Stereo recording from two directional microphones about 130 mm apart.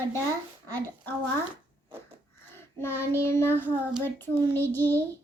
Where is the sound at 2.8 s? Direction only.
20° left (ahead or behind).